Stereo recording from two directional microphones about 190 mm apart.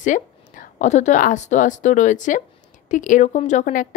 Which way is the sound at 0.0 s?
40° left (ahead or behind).